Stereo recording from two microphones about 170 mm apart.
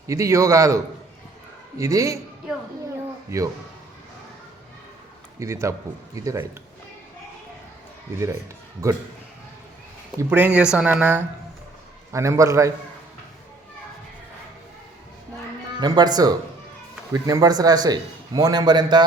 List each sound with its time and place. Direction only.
0.1 s speech: 15° right (ahead or behind)
1.8 s speech: 20° right (ahead or behind)
3.2 s speech: 20° right (ahead or behind)
5.4 s speech: 15° right (ahead or behind)
10.2 s speech: 10° right (ahead or behind)
15.8 s a man's voice: 25° right (ahead or behind)